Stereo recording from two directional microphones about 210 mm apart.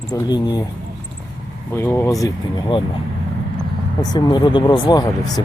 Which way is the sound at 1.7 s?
10° left (ahead or behind).